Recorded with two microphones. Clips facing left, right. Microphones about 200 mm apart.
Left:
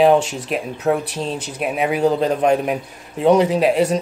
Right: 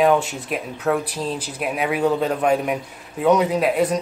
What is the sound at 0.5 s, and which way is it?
A man's voice, 25° left (ahead or behind).